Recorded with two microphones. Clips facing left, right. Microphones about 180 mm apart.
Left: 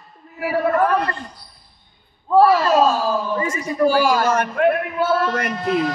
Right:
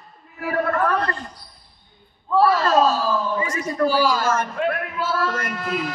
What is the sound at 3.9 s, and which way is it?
A man's voice, 50° left (ahead or behind).